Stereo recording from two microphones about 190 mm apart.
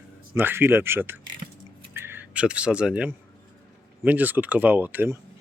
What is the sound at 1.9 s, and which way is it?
Speech, 10° right (ahead or behind).